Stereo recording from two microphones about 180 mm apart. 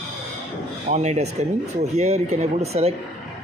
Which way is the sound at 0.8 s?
40° right (ahead or behind).